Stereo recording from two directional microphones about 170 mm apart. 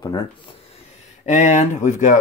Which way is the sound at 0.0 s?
25° left (ahead or behind).